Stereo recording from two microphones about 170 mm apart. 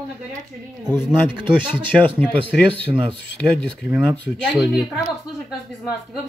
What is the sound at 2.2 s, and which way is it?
Speech, 10° left (ahead or behind).